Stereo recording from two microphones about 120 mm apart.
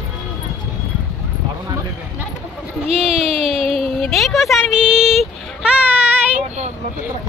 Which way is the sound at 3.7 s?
Centre (ahead or behind).